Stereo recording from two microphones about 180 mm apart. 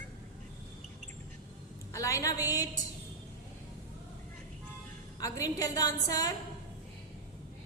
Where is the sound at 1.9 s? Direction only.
20° left (ahead or behind).